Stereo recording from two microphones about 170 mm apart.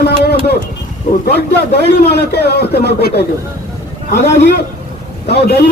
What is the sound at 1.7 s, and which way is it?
A man's voice, 75° left (ahead or behind).